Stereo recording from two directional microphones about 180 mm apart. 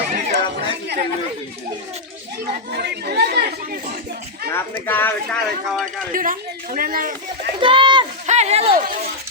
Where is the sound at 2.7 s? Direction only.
65° right (ahead or behind).